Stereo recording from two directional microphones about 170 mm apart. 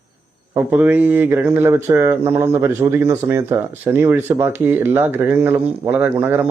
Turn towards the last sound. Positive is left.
turn(degrees=-10)  # may be behind; listen again after turning